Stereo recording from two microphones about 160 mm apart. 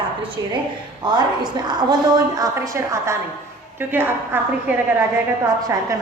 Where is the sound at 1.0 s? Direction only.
25° right (ahead or behind).